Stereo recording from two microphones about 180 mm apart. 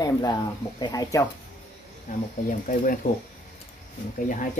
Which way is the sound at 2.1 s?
45° left (ahead or behind).